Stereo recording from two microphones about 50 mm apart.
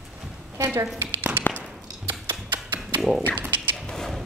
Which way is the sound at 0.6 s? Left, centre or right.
Right.